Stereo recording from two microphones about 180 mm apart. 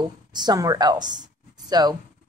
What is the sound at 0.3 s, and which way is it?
Speech, 25° right (ahead or behind).